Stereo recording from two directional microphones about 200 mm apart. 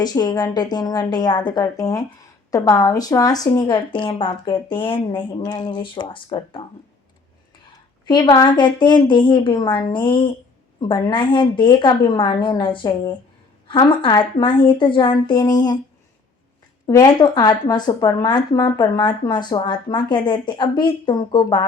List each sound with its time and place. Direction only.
0.0 s speech: 20° left (ahead or behind)
8.0 s speech: 20° left (ahead or behind)
16.8 s speech: 20° left (ahead or behind)